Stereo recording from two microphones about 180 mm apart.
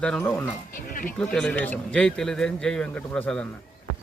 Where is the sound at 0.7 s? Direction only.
50° left (ahead or behind).